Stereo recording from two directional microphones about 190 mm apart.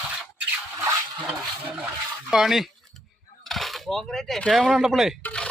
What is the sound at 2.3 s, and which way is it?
Speech, centre (ahead or behind).